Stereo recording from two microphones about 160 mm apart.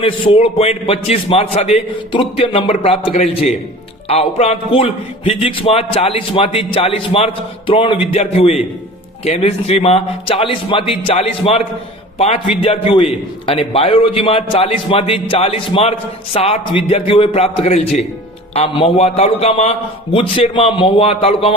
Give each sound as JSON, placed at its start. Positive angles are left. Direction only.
{"t": 0.0, "sound": "a man's voice", "side_deg": 35}